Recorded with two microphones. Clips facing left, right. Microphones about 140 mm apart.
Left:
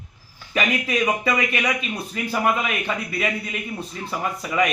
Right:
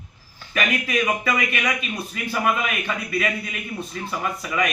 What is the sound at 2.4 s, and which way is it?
Speech, 30° left (ahead or behind).